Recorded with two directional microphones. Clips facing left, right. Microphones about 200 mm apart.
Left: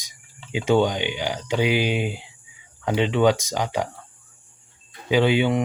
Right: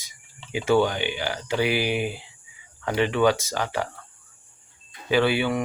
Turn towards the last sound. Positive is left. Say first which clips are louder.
# left 3 dB
turn(degrees=20)  # may be behind; listen again after turning